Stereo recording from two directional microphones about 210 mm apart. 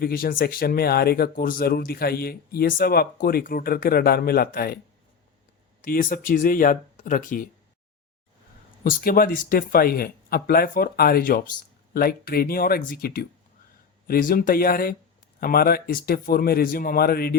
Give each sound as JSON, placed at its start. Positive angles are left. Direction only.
{"t": 0.0, "sound": "speech", "side_deg": 45}
{"t": 5.8, "sound": "speech", "side_deg": 40}
{"t": 8.8, "sound": "speech", "side_deg": 40}